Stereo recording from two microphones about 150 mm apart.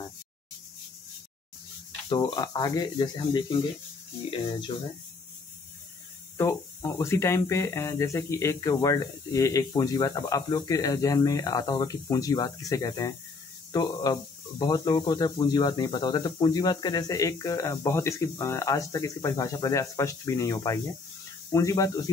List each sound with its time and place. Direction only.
2.0 s speech: 30° left (ahead or behind)
6.3 s speech: 20° left (ahead or behind)